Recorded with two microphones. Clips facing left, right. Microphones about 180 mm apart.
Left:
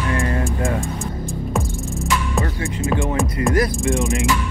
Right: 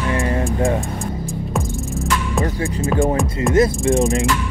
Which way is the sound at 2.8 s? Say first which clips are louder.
Right 3 dB; centre (ahead or behind).